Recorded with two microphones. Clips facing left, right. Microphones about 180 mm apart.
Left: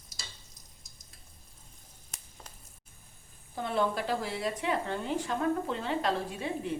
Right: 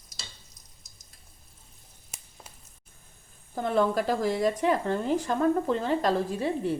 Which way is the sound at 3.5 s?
45° right (ahead or behind).